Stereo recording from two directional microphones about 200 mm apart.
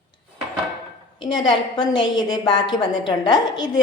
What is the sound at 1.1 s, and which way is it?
A woman's voice, 25° left (ahead or behind).